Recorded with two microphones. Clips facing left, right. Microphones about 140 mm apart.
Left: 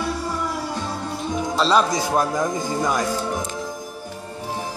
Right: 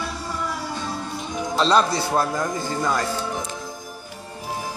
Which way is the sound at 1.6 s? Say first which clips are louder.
Even; 5° left (ahead or behind).